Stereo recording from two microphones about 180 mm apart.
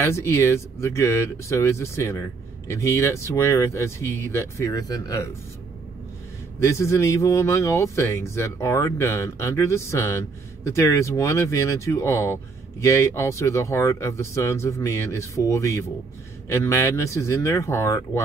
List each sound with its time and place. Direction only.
0.0 s speech: 15° left (ahead or behind)
6.6 s speech: 15° left (ahead or behind)